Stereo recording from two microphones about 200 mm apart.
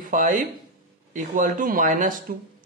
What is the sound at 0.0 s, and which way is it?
A man's voice, 40° right (ahead or behind).